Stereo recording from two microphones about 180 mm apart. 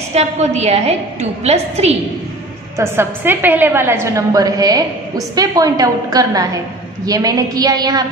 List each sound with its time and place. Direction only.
0.1 s a woman's voice: 40° right (ahead or behind)
2.8 s a woman's voice: 15° right (ahead or behind)